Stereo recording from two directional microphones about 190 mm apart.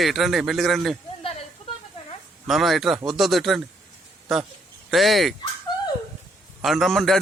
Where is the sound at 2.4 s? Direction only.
Centre (ahead or behind).